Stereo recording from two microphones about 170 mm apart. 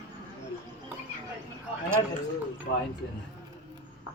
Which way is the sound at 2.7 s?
75° left (ahead or behind).